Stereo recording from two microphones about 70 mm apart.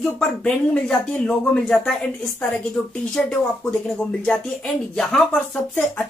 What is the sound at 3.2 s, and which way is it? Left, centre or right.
Speech, centre.